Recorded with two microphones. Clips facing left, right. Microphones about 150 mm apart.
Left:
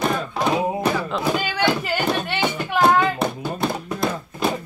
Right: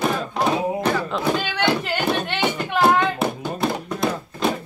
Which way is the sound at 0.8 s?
5° left (ahead or behind).